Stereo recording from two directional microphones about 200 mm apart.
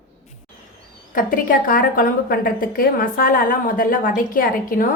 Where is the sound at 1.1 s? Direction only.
45° left (ahead or behind).